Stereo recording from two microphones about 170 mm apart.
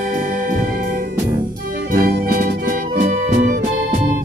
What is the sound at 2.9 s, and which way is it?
Music, 50° right (ahead or behind).